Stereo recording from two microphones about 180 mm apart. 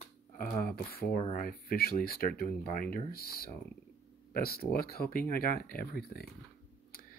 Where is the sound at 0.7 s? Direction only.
55° left (ahead or behind).